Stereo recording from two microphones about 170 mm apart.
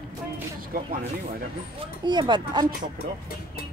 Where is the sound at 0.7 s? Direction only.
60° right (ahead or behind).